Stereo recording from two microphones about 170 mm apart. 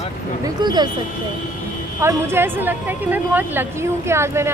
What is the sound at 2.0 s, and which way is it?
Speech, 15° right (ahead or behind).